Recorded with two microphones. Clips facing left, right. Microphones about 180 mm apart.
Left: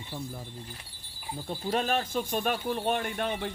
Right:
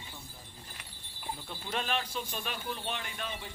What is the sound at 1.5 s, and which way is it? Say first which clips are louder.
Speech: left 8 dB; 40° left (ahead or behind).